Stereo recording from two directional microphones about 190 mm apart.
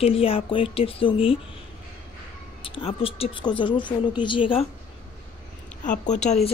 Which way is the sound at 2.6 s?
30° left (ahead or behind).